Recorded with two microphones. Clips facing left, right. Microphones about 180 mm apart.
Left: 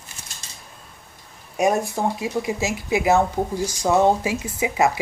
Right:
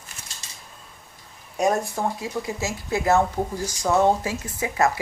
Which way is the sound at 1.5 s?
10° left (ahead or behind).